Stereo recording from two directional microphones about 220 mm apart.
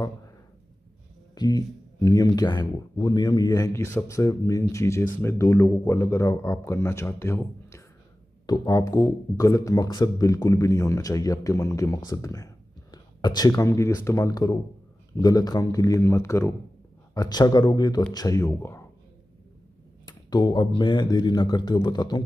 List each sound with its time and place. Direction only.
1.3 s speech: 15° left (ahead or behind)
20.1 s speech: 20° left (ahead or behind)